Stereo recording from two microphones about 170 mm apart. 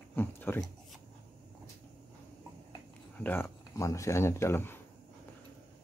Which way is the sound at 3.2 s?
15° left (ahead or behind).